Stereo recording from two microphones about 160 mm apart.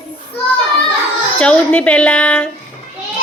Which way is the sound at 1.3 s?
5° left (ahead or behind).